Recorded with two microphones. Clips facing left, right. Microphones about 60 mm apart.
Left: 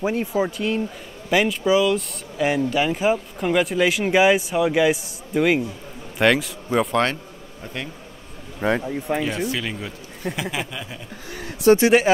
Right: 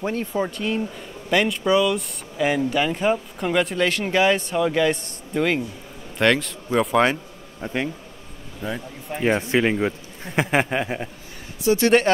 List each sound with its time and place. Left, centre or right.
0.0 s speech: centre
7.6 s speech: right
8.5 s speech: left
9.5 s speech: right
11.7 s speech: left